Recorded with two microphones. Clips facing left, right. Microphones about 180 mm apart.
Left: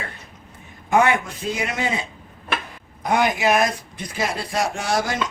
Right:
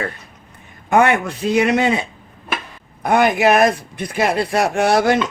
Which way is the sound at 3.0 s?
60° right (ahead or behind).